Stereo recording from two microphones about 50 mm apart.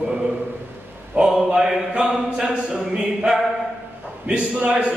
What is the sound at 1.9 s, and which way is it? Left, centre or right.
Speech, right.